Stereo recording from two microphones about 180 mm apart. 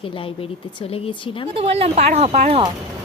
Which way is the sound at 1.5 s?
35° right (ahead or behind).